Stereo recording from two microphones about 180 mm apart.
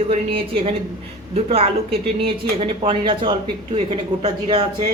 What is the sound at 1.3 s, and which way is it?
Speech, 35° right (ahead or behind).